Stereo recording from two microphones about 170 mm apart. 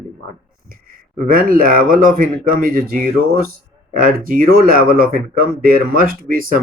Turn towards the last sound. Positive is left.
turn(degrees=-55)  # may be behind; listen again after turning